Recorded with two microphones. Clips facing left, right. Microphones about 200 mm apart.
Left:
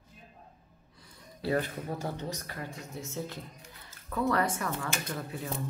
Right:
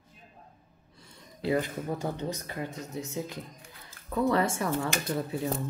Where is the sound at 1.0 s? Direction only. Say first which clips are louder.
Right 3 dB; 20° right (ahead or behind).